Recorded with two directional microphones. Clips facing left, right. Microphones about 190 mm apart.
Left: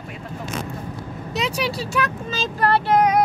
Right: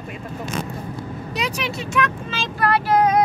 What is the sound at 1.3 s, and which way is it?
Speech, 30° left (ahead or behind).